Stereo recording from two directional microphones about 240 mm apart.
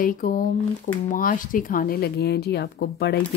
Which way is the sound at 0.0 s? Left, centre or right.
Left.